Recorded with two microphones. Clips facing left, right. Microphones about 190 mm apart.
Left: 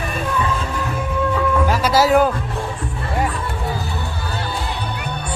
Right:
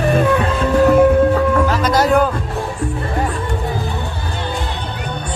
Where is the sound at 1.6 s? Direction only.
10° left (ahead or behind).